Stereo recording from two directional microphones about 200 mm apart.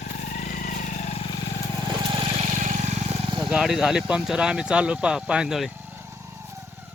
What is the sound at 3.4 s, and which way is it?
Speech, centre (ahead or behind).